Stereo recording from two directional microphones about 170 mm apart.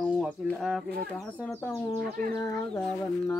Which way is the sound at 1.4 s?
15° left (ahead or behind).